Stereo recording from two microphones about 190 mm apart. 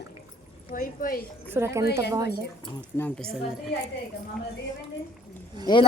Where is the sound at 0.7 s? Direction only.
45° left (ahead or behind).